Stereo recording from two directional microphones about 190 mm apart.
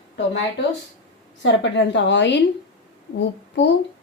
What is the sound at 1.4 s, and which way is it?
A woman's voice, 70° left (ahead or behind).